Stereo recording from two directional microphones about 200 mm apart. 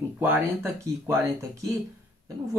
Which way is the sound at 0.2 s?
10° right (ahead or behind).